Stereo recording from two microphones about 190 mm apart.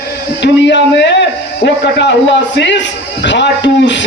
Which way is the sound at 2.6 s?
70° left (ahead or behind).